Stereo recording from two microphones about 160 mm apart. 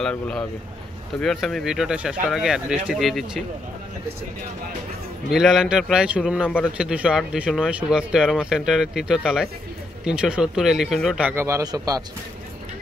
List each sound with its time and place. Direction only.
0.0 s speech: 5° left (ahead or behind)
5.3 s speech: 5° right (ahead or behind); by 12.0 s 25° right (ahead or behind)